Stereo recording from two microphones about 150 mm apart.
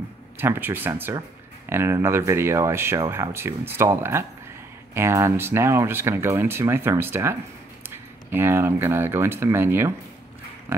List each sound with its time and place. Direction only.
0.4 s speech: 15° right (ahead or behind)